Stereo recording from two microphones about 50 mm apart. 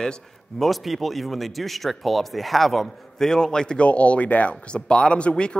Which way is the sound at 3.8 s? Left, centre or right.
Left.